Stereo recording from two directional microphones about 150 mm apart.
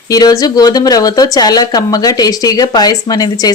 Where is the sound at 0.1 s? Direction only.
25° left (ahead or behind).